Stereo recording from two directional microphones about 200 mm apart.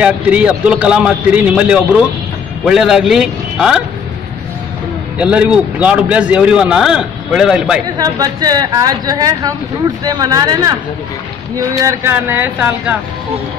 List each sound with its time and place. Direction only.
0.0 s speech: 5° right (ahead or behind)
5.2 s speech: 5° right (ahead or behind)
8.0 s a woman's voice: 20° right (ahead or behind)
11.8 s speech: 10° right (ahead or behind)